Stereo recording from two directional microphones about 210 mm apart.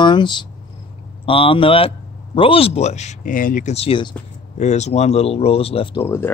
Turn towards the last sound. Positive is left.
turn(degrees=25)  # may be behind; listen again after turning